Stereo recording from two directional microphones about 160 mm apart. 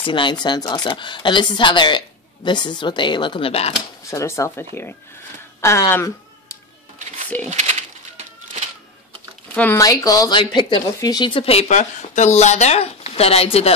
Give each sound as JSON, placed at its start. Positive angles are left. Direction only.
{"t": 0.0, "sound": "speech", "side_deg": 30}
{"t": 4.1, "sound": "speech", "side_deg": 20}
{"t": 7.4, "sound": "speech", "side_deg": -45}
{"t": 9.5, "sound": "speech", "side_deg": 10}
{"t": 9.8, "sound": "speech", "side_deg": 20}